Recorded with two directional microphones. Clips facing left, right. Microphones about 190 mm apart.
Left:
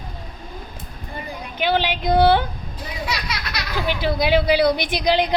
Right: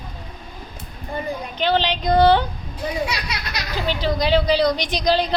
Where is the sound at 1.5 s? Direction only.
10° left (ahead or behind).